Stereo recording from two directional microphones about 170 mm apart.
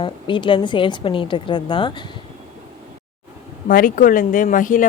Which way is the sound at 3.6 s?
55° left (ahead or behind).